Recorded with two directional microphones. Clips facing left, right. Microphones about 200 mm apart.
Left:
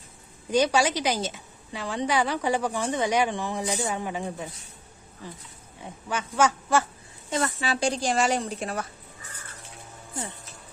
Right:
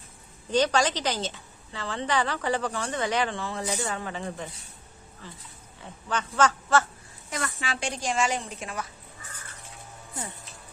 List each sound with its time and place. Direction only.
0.5 s a woman's voice: 10° left (ahead or behind)
5.8 s a woman's voice: 10° left (ahead or behind)
7.3 s a woman's voice: 30° left (ahead or behind)